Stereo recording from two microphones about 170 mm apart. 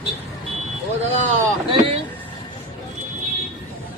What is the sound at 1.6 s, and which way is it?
Vehicle, 35° right (ahead or behind).